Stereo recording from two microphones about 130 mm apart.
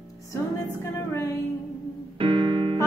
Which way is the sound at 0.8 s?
25° left (ahead or behind).